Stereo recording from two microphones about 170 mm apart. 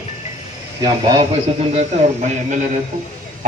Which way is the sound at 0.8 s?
30° right (ahead or behind).